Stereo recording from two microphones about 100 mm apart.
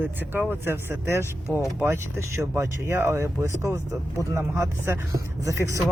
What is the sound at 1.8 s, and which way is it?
Speech, 25° right (ahead or behind).